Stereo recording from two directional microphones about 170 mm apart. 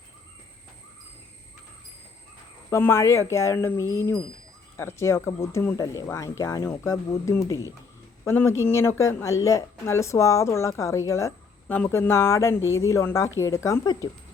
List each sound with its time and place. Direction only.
2.6 s speech: 15° left (ahead or behind)